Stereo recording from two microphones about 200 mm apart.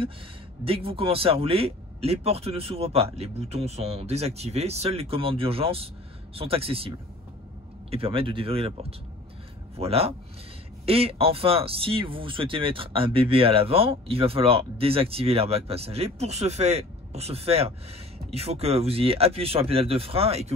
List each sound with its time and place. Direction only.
0.7 s speech: 30° right (ahead or behind)
7.9 s speech: 25° right (ahead or behind)